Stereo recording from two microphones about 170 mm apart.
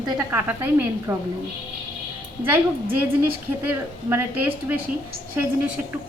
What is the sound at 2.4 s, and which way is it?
A woman's voice, 10° right (ahead or behind).